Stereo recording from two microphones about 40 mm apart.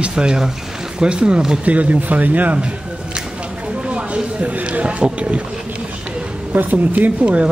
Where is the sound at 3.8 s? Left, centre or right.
Right.